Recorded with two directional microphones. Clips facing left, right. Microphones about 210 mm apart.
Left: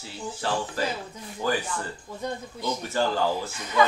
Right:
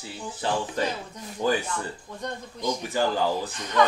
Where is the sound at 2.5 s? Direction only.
15° right (ahead or behind).